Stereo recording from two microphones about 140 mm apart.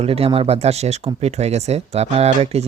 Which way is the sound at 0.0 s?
45° right (ahead or behind).